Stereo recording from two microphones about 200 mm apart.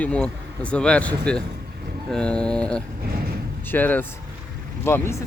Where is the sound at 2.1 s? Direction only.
5° left (ahead or behind).